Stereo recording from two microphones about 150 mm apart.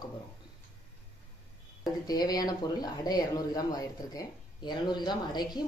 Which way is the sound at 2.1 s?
25° left (ahead or behind).